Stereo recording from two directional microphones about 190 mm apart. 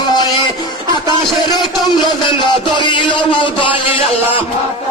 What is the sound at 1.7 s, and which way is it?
Music, 25° left (ahead or behind).